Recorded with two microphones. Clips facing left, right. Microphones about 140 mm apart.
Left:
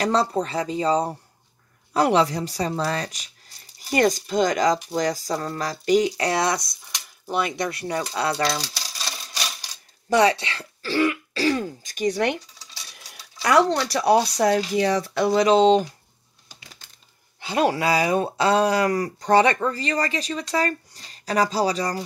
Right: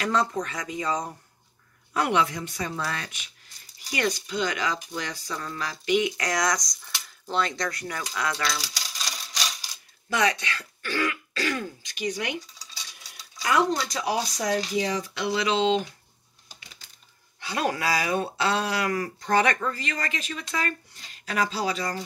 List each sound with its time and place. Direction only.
0.0 s speech: 35° left (ahead or behind)
6.8 s a sound: 10° left (ahead or behind)
7.5 s speech: 25° left (ahead or behind)
10.0 s throat clearing: 35° left (ahead or behind)
11.8 s speech: 45° left (ahead or behind)
13.1 s speech: 75° left (ahead or behind)
15.1 s speech: 45° left (ahead or behind)
17.4 s speech: 25° left (ahead or behind)